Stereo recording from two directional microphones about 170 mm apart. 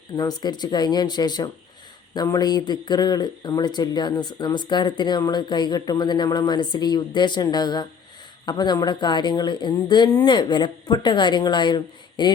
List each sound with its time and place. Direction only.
0.2 s speech: 25° left (ahead or behind)